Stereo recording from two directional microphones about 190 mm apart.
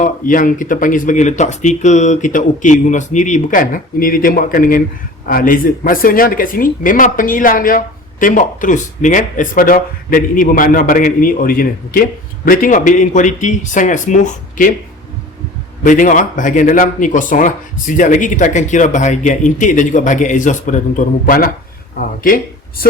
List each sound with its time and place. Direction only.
0.0 s a man's voice: 45° left (ahead or behind)
15.8 s speech: 45° left (ahead or behind)